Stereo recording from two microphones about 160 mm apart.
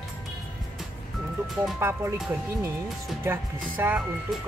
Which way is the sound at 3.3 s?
10° right (ahead or behind).